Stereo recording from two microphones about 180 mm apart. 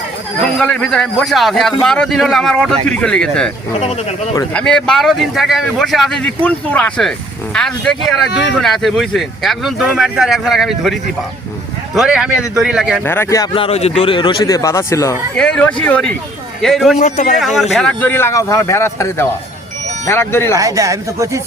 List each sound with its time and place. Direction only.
0.4 s speech: 5° left (ahead or behind)
4.5 s speech: 5° left (ahead or behind)
11.9 s speech: 5° right (ahead or behind)
13.1 s speech: 15° left (ahead or behind)
13.5 s speech: 30° left (ahead or behind); by 15.1 s 15° left (ahead or behind)
15.4 s speech: 5° left (ahead or behind)
17.0 s speech: 45° left (ahead or behind)
17.4 s speech: centre (ahead or behind)
20.6 s speech: 20° right (ahead or behind)